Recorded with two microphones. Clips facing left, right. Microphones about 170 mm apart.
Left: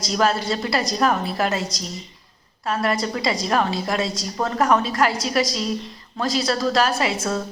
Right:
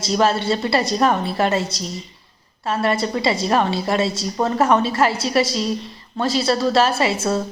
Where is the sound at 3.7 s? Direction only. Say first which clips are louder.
Right 3 dB; 30° right (ahead or behind).